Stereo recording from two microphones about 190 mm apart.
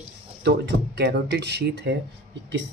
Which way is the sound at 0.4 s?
65° right (ahead or behind).